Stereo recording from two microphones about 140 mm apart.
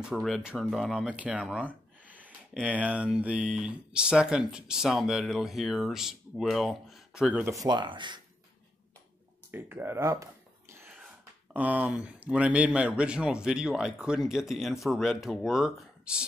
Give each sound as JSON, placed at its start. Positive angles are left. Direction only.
{"t": 0.0, "sound": "speech", "side_deg": 0}
{"t": 7.6, "sound": "speech", "side_deg": -35}
{"t": 9.5, "sound": "a sound", "side_deg": -15}
{"t": 11.5, "sound": "speech", "side_deg": -10}